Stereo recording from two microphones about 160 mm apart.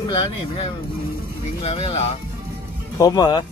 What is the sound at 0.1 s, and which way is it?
Speech, 35° left (ahead or behind).